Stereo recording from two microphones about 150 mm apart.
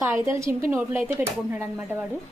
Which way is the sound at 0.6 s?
15° right (ahead or behind).